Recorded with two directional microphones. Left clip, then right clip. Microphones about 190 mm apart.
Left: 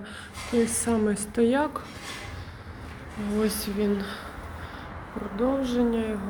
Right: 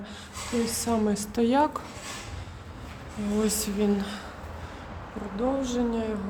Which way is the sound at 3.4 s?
15° right (ahead or behind).